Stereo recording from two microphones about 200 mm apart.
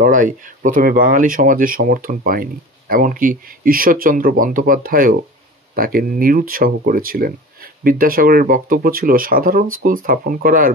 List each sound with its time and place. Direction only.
0.0 s speech: 45° right (ahead or behind)